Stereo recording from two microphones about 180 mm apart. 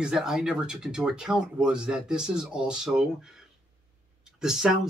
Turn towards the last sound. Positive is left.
turn(degrees=-5)  # may be behind; listen again after turning